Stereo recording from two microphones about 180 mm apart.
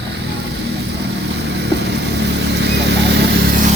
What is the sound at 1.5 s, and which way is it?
Vehicle, 70° right (ahead or behind).